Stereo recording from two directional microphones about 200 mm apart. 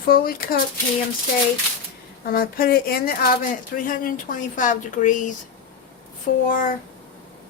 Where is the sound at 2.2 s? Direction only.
50° left (ahead or behind).